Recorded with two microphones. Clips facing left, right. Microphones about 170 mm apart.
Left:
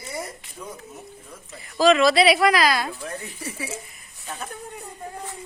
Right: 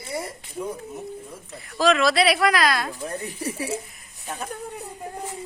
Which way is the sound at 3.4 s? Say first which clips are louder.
Right 6 dB; 35° right (ahead or behind).